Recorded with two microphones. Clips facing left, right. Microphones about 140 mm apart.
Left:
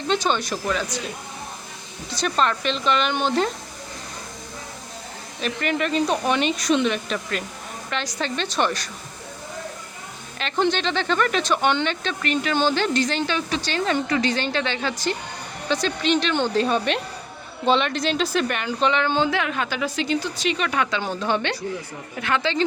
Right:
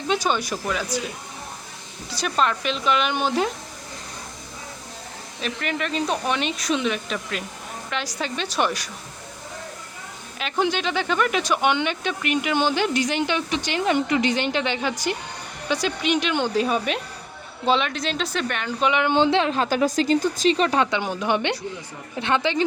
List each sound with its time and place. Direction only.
0.1 s speech: 10° right (ahead or behind)
2.0 s speech: 5° right (ahead or behind)
5.4 s speech: centre (ahead or behind)
10.3 s speech: 5° right (ahead or behind)
18.8 s a woman's voice: 10° right (ahead or behind); by 20.5 s 45° right (ahead or behind)
20.5 s a woman's voice: 35° right (ahead or behind)
21.0 s a woman's voice: 15° right (ahead or behind)